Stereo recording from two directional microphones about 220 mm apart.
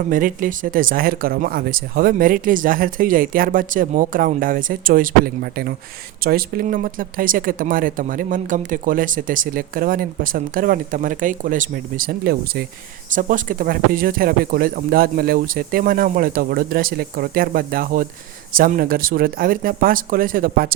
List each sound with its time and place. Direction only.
0.1 s speech: 40° right (ahead or behind)